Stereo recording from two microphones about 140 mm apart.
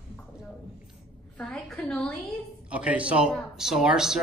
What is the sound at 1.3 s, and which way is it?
Speech, 5° left (ahead or behind).